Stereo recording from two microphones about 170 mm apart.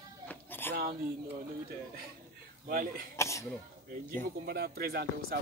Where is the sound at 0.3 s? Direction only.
10° left (ahead or behind).